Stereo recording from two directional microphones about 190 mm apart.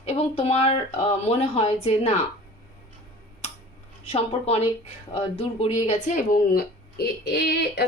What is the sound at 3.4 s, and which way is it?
Scissors, 35° left (ahead or behind).